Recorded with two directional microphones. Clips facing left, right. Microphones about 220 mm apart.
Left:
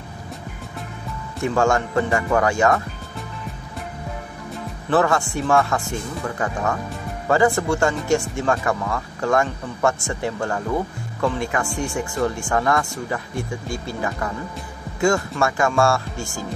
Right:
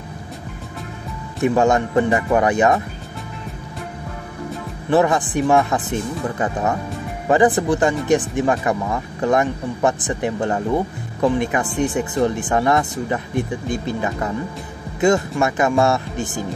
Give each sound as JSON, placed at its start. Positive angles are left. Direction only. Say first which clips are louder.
{"t": 1.4, "sound": "speech", "louder": "right 3 dB", "side_deg": -20}
{"t": 4.8, "sound": "speech", "louder": "right 3 dB", "side_deg": -15}